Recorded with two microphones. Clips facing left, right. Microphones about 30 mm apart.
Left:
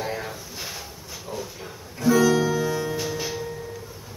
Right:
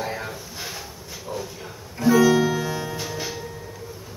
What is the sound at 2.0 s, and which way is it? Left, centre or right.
Music, centre.